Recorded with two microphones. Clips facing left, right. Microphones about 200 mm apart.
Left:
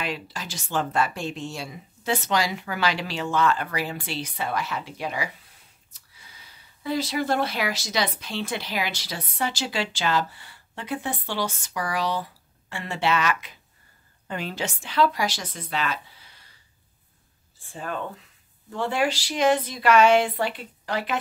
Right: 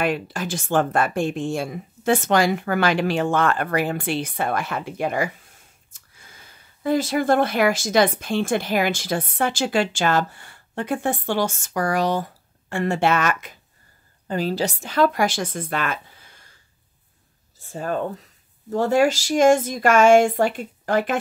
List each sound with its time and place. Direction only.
0.0 s speech: 50° right (ahead or behind)
14.2 s a woman's voice: 35° right (ahead or behind)
17.6 s speech: 40° right (ahead or behind)